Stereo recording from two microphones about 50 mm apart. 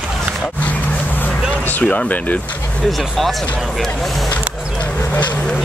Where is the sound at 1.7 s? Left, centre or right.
Left.